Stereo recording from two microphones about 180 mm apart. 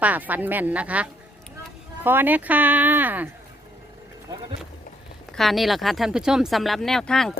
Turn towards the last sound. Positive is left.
turn(degrees=5)  # may be behind; listen again after turning